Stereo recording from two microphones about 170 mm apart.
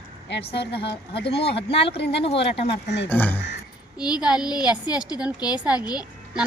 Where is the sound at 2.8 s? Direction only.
90° left.